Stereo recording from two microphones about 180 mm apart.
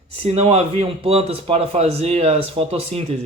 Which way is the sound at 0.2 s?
35° right (ahead or behind).